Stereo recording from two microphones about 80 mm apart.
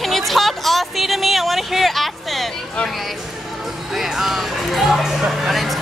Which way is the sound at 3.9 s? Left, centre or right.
Centre.